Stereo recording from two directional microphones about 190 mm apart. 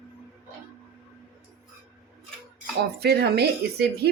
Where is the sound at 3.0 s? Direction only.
60° right (ahead or behind).